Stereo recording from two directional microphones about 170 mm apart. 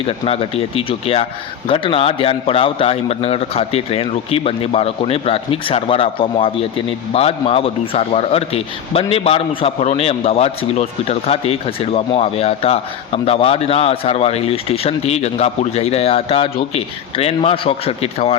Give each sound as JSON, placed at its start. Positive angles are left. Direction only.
{"t": 0.1, "sound": "speech", "side_deg": 35}